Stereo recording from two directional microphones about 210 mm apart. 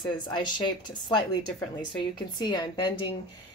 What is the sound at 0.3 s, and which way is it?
Speech, 20° left (ahead or behind).